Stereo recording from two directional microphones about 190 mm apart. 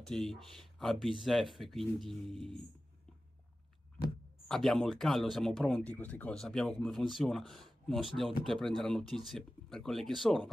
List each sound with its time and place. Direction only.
0.0 s speech: 5° left (ahead or behind)
4.5 s speech: centre (ahead or behind)